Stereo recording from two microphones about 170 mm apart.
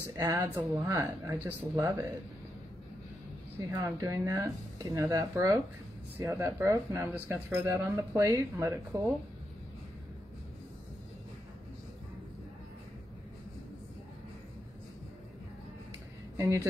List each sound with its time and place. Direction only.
0.2 s speech: 20° right (ahead or behind)
3.5 s speech: 20° right (ahead or behind)